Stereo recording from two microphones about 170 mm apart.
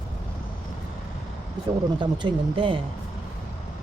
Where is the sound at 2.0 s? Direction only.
30° right (ahead or behind).